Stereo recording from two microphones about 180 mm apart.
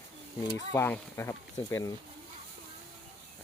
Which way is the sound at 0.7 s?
15° left (ahead or behind).